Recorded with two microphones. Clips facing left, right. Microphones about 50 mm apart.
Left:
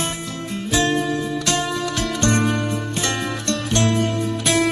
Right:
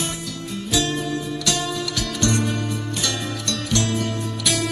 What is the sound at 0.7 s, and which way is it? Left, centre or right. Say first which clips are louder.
Music: left 4 dB; left.